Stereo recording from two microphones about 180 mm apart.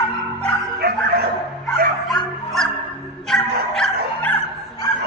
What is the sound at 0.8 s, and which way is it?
Bow-wow, 60° right (ahead or behind).